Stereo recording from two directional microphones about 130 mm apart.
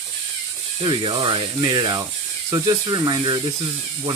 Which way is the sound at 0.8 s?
40° right (ahead or behind).